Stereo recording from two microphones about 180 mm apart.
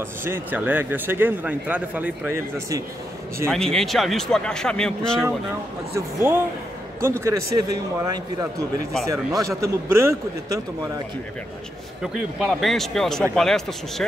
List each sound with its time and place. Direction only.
0.2 s speech: 10° right (ahead or behind)
3.5 s speech: 5° left (ahead or behind)
5.9 s speech: 15° right (ahead or behind)
12.0 s speech: centre (ahead or behind)